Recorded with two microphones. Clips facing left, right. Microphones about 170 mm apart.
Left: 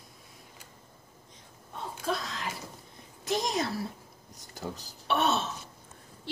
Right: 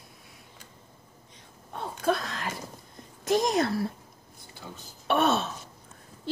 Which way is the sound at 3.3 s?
50° right (ahead or behind).